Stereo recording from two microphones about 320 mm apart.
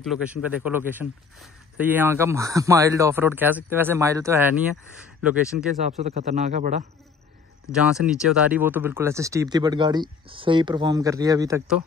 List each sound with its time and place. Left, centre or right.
0.0 s speech: centre
5.9 s speech: right
7.7 s speech: centre